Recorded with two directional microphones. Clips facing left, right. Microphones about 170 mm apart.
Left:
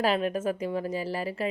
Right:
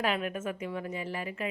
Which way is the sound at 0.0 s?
35° left (ahead or behind).